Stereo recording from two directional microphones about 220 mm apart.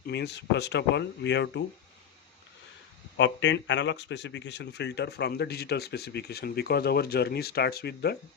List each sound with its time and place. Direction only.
0.0 s speech: 50° left (ahead or behind)
3.2 s speech: 55° left (ahead or behind)